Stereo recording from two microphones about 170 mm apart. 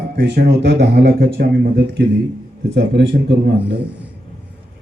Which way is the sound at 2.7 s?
90° right.